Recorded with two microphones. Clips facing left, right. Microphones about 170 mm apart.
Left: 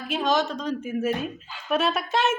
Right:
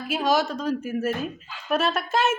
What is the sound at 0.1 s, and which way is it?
A woman's voice, 10° right (ahead or behind).